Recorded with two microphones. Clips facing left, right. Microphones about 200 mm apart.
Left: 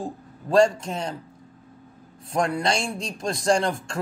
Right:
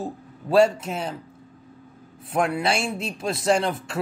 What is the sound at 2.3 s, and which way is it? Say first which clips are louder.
Speech: right 1 dB; 5° right (ahead or behind).